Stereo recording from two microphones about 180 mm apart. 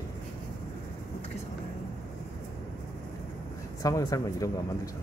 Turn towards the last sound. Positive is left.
turn(degrees=20)  # may be behind; listen again after turning